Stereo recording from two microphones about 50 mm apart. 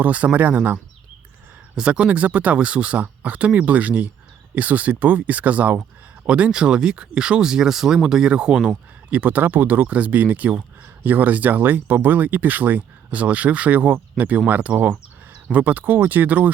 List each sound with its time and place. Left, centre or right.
0.0 s speech: right
1.7 s speech: right
9.0 s speech: right